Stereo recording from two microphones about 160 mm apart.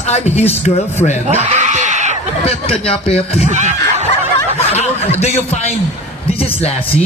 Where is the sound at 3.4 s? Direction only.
45° right (ahead or behind).